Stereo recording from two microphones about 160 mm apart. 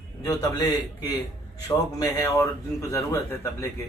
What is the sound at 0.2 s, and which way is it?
Speech, 25° left (ahead or behind).